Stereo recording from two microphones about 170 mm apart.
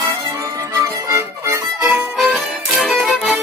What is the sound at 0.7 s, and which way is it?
Music, 20° right (ahead or behind).